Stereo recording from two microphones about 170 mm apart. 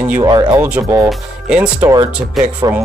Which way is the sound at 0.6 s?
10° right (ahead or behind).